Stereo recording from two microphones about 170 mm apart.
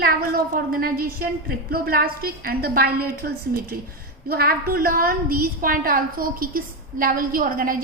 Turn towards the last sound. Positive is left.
turn(degrees=-55)  # may be behind; listen again after turning